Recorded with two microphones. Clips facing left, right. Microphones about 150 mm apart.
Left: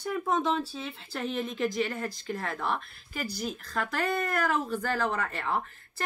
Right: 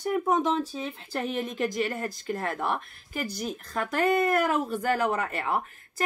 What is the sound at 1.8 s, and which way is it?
Speech, 10° right (ahead or behind).